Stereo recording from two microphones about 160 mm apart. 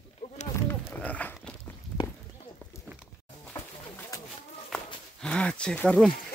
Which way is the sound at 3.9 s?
20° left (ahead or behind).